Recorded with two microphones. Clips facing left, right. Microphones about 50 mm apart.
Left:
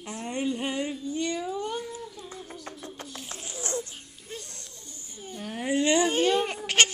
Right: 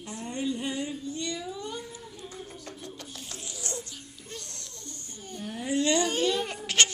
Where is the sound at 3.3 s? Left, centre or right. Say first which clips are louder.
Left 6 dB; left.